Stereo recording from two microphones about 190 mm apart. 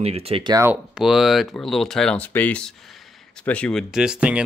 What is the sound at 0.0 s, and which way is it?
Speech, 30° right (ahead or behind).